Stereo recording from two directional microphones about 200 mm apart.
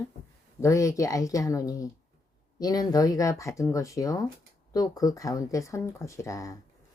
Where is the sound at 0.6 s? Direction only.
15° left (ahead or behind).